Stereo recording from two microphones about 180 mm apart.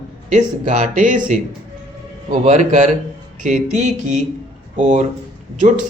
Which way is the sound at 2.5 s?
40° right (ahead or behind).